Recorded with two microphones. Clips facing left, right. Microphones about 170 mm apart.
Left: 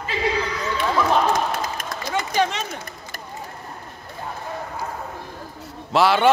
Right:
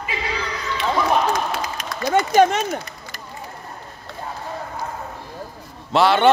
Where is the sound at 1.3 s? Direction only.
50° left (ahead or behind).